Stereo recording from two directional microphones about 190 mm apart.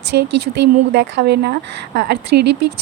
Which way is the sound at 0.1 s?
60° right (ahead or behind).